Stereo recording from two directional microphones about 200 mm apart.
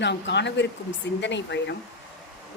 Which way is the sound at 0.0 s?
60° left (ahead or behind).